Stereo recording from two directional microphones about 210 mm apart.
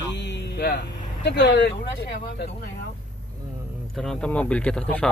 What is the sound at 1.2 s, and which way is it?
Speech, 55° left (ahead or behind).